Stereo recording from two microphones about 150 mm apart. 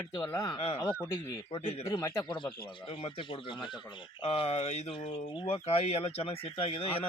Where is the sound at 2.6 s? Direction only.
35° left (ahead or behind).